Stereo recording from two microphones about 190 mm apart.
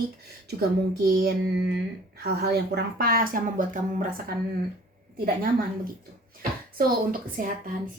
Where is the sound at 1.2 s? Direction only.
60° right (ahead or behind).